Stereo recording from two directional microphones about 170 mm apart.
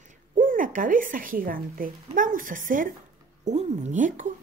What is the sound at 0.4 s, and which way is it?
Speech, 50° right (ahead or behind).